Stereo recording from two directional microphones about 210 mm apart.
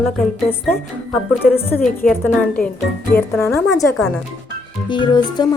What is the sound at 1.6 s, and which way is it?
Speech, 10° left (ahead or behind).